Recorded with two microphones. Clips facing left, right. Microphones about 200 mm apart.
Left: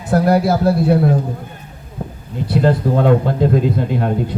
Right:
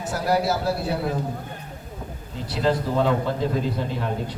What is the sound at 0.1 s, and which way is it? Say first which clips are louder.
A man's voice: left 9 dB; 55° left (ahead or behind).